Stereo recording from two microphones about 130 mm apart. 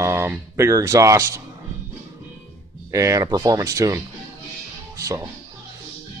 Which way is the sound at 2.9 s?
25° right (ahead or behind).